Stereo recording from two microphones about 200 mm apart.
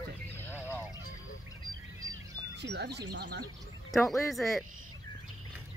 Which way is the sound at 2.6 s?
55° right (ahead or behind).